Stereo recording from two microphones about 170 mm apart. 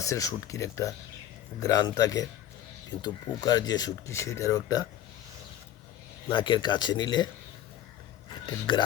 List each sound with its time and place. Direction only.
0.0 s speech: 20° left (ahead or behind)
6.2 s speech: 30° left (ahead or behind)
8.4 s speech: 25° left (ahead or behind)